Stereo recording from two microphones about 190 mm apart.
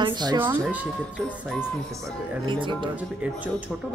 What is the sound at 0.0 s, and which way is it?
Speech, 20° right (ahead or behind).